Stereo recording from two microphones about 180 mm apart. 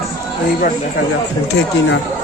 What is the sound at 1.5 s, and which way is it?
Speech, 90° left.